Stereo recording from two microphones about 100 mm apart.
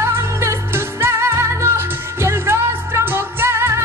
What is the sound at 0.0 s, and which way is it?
Music, 25° right (ahead or behind).